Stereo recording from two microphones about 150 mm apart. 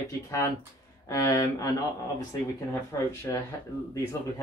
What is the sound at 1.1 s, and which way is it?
Speech, 25° left (ahead or behind).